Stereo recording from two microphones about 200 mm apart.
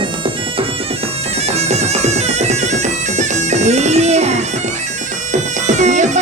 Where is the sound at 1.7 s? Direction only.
35° right (ahead or behind).